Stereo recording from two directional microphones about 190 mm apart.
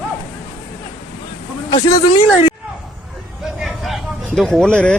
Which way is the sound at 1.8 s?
15° left (ahead or behind).